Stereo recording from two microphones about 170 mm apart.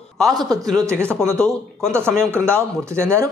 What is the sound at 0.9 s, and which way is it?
Speech, 15° right (ahead or behind).